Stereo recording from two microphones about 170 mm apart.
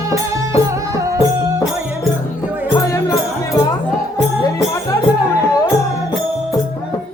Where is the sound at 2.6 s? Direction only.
20° left (ahead or behind).